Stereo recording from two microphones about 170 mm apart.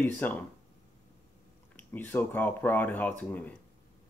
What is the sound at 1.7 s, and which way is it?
Speech, 10° left (ahead or behind).